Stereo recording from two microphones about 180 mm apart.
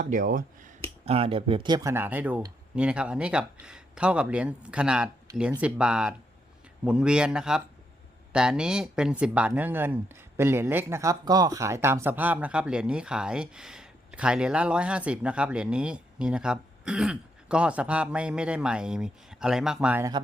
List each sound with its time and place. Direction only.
0.0 s speech: 45° right (ahead or behind)
1.0 s speech: 35° right (ahead or behind); by 20.1 s 5° right (ahead or behind)